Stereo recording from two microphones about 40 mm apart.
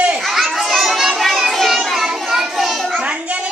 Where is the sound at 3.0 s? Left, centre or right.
Right.